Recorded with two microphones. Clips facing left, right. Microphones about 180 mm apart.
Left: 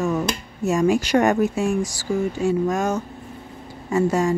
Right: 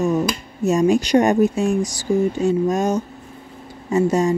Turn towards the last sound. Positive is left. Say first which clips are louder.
# right 2 dB
turn(degrees=-20)  # may be behind; listen again after turning